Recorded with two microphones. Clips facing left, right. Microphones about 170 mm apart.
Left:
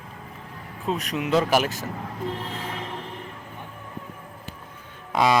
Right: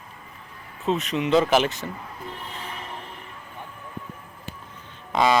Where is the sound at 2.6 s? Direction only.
90° left.